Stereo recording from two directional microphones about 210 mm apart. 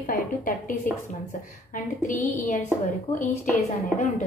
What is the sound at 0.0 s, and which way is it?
Speech, 40° left (ahead or behind).